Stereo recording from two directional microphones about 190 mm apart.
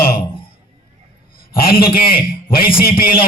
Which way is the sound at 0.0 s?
50° left (ahead or behind).